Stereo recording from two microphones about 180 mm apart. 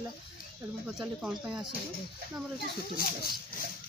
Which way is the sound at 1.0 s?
5° right (ahead or behind).